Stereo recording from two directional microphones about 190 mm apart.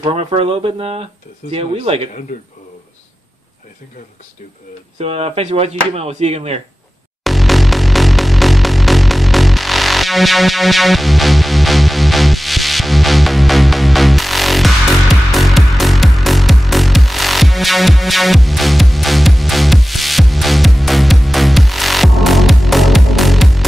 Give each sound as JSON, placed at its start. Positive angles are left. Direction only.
{"t": 0.0, "sound": "speech", "side_deg": -30}
{"t": 4.9, "sound": "speech", "side_deg": -30}
{"t": 7.2, "sound": "music", "side_deg": 0}